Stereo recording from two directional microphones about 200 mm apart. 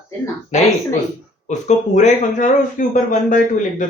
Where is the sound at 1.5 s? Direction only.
35° left (ahead or behind).